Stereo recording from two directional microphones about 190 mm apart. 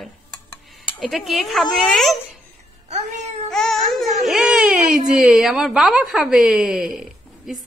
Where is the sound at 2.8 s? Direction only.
35° right (ahead or behind).